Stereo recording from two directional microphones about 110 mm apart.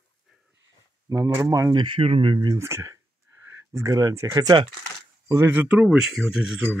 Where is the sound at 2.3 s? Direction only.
35° right (ahead or behind).